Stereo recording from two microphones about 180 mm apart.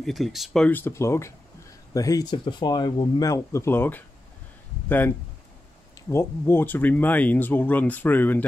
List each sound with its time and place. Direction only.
0.0 s speech: centre (ahead or behind)